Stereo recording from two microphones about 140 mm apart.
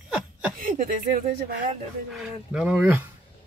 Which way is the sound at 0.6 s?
80° right.